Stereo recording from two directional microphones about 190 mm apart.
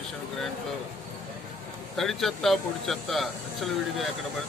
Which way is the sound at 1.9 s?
Centre (ahead or behind).